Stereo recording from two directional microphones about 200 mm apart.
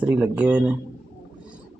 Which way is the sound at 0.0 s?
5° right (ahead or behind).